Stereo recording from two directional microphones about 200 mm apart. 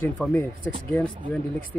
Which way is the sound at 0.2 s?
10° left (ahead or behind).